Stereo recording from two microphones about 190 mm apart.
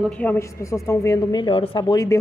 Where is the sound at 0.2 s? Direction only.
10° left (ahead or behind).